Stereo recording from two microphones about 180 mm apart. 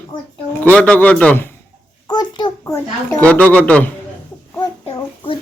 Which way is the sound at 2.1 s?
25° left (ahead or behind).